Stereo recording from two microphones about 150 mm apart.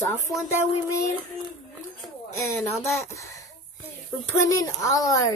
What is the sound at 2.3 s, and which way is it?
Speech, 15° left (ahead or behind).